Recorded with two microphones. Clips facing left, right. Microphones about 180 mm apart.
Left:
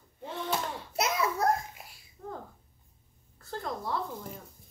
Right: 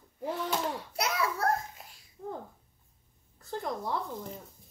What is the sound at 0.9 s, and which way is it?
Speech, 20° left (ahead or behind).